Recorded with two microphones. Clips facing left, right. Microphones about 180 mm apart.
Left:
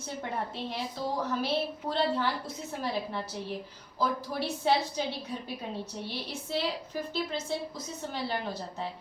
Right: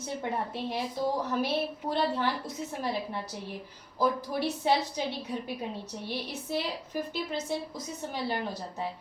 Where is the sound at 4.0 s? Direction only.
20° right (ahead or behind).